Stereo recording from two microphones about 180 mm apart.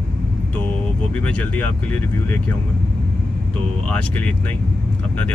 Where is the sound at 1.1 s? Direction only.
10° left (ahead or behind).